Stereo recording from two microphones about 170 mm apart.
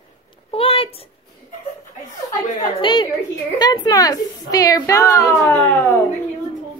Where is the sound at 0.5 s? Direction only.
35° left (ahead or behind).